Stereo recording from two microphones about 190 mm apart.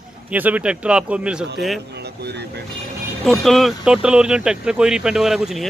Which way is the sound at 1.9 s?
60° right (ahead or behind).